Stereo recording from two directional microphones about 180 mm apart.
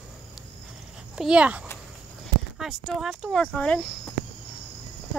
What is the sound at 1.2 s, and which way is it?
Speech, 5° right (ahead or behind).